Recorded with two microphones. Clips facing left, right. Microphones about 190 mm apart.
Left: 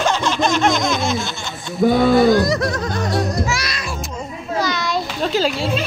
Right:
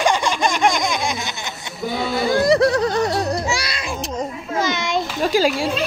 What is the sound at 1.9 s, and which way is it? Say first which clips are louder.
Speech: left 8 dB; 55° left (ahead or behind).